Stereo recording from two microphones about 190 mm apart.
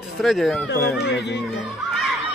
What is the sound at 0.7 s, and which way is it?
Speech, 65° left (ahead or behind).